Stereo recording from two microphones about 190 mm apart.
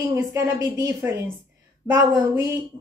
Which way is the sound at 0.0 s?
15° right (ahead or behind).